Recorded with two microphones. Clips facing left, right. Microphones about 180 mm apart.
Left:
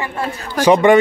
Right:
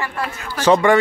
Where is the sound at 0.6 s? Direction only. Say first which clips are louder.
Left 3 dB; 15° left (ahead or behind).